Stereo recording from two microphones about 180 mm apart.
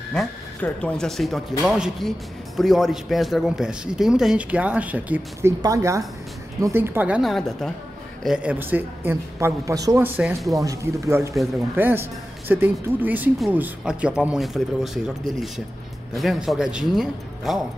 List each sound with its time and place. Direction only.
0.1 s a man's voice: 5° left (ahead or behind)
16.2 s a man's voice: centre (ahead or behind)